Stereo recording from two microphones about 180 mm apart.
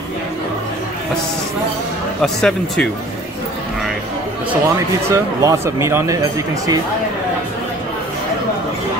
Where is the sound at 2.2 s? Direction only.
5° left (ahead or behind).